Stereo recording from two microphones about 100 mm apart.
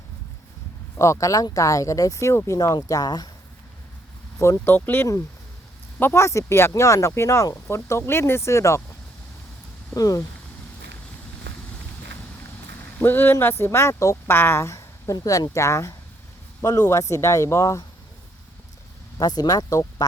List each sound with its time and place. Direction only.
0.9 s speech: 30° left (ahead or behind)
4.4 s speech: 25° left (ahead or behind)
9.9 s speech: 35° left (ahead or behind)
13.0 s speech: 20° left (ahead or behind)
19.2 s speech: 40° left (ahead or behind)